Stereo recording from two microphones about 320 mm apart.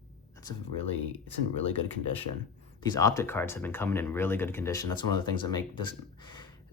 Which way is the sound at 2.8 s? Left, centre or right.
Centre.